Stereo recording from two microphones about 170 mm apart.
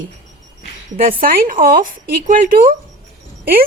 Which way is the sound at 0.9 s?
55° right (ahead or behind).